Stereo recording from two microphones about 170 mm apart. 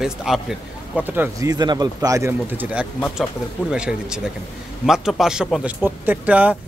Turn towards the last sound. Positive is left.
turn(degrees=-10)  # may be behind; listen again after turning